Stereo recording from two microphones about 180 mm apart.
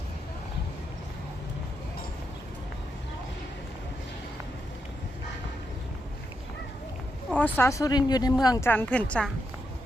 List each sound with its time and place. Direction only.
7.3 s speech: 10° left (ahead or behind)